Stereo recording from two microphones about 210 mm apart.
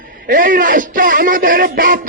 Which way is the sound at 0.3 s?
40° right (ahead or behind).